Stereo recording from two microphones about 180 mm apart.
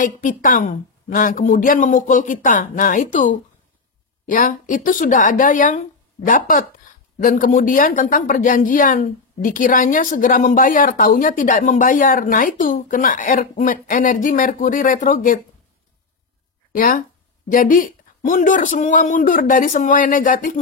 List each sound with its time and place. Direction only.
0.0 s a woman's voice: 45° left (ahead or behind)
16.7 s a woman's voice: 50° left (ahead or behind)